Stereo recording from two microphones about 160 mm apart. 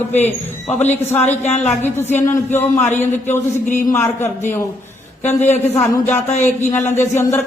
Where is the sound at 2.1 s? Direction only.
15° left (ahead or behind).